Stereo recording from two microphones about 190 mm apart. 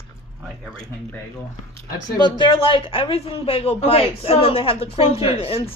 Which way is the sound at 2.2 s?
25° left (ahead or behind).